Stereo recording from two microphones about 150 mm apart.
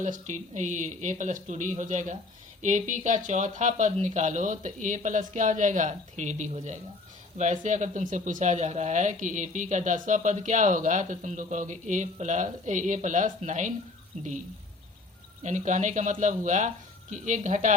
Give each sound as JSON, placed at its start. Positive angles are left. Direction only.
{"t": 0.0, "sound": "speech", "side_deg": -55}
{"t": 15.4, "sound": "speech", "side_deg": -55}